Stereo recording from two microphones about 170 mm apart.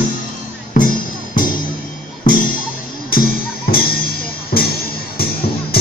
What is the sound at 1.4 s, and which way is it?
Music, 55° left (ahead or behind).